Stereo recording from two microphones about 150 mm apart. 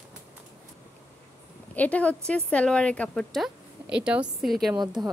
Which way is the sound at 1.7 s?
10° left (ahead or behind).